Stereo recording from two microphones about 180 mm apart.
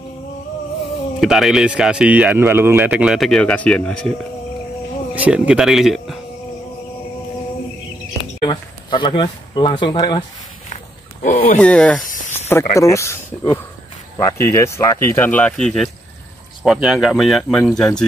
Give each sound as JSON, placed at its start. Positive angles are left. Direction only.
{"t": 1.2, "sound": "speech", "side_deg": 0}
{"t": 5.1, "sound": "speech", "side_deg": -10}
{"t": 8.4, "sound": "speech", "side_deg": 25}
{"t": 11.2, "sound": "speech", "side_deg": 50}
{"t": 11.6, "sound": "speech", "side_deg": 5}
{"t": 12.3, "sound": "snake", "side_deg": 15}
{"t": 12.7, "sound": "speech", "side_deg": 15}